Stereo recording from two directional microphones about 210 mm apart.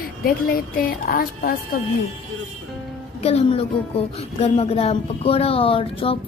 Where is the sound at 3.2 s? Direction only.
30° left (ahead or behind).